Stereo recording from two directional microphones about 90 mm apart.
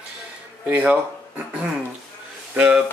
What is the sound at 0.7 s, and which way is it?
Speech, 15° right (ahead or behind).